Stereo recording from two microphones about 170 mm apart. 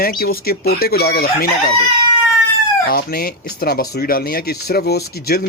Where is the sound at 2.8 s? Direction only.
60° left (ahead or behind).